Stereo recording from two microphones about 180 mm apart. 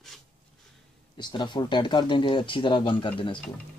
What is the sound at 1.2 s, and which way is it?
Speech, 25° left (ahead or behind).